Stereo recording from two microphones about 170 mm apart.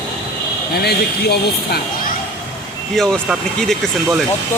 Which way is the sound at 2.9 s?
Centre (ahead or behind).